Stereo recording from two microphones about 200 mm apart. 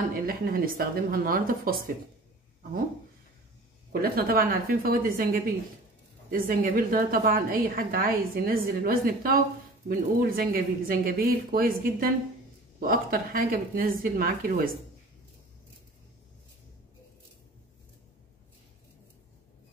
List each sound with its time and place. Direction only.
0.1 s a woman's voice: 45° right (ahead or behind)
3.9 s a woman's voice: 50° right (ahead or behind)